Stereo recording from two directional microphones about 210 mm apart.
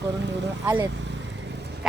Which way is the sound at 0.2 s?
55° right (ahead or behind).